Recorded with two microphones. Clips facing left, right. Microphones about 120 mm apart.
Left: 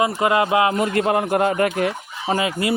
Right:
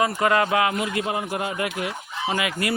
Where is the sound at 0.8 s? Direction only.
55° left (ahead or behind); by 2.5 s 40° left (ahead or behind).